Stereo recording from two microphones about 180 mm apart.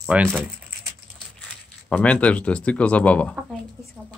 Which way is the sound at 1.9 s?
5° left (ahead or behind).